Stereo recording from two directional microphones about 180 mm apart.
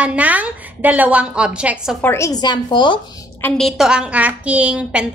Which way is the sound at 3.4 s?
Centre (ahead or behind).